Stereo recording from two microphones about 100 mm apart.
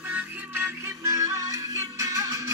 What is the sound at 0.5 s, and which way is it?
Music, 30° right (ahead or behind).